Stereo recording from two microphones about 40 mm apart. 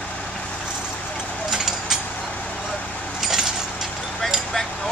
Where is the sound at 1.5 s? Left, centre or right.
Centre.